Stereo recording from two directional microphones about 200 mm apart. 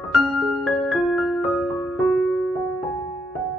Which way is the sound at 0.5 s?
Centre (ahead or behind).